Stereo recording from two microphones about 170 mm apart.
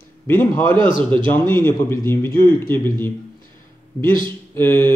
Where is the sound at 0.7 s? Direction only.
30° right (ahead or behind).